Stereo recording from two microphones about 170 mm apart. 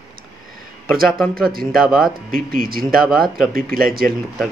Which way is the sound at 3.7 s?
60° right (ahead or behind).